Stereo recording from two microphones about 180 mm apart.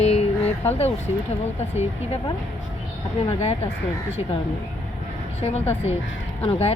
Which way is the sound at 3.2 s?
35° left (ahead or behind).